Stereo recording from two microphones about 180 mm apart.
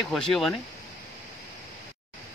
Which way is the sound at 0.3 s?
Centre (ahead or behind).